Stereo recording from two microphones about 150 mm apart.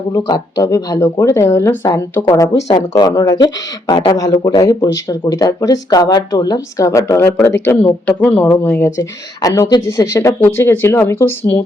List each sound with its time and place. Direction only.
0.3 s speech: 25° left (ahead or behind)